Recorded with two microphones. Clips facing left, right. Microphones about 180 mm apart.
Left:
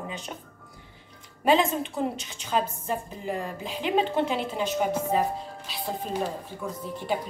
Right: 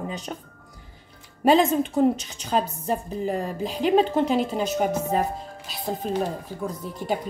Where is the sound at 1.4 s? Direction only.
40° right (ahead or behind).